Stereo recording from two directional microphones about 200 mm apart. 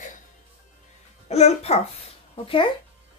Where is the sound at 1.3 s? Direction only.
30° left (ahead or behind).